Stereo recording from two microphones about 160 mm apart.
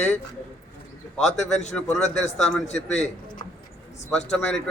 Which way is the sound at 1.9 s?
5° left (ahead or behind).